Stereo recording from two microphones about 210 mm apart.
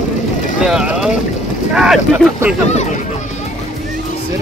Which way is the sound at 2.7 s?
35° left (ahead or behind).